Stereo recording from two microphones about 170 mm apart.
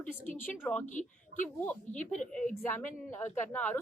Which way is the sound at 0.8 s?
45° left (ahead or behind).